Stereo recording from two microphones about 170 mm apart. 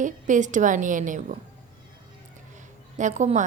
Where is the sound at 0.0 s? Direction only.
45° right (ahead or behind).